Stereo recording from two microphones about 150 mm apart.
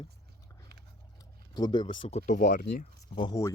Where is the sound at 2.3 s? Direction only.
55° left (ahead or behind).